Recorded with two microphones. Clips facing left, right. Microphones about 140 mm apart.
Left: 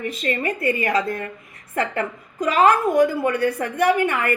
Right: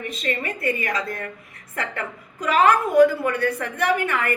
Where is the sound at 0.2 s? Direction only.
40° left (ahead or behind).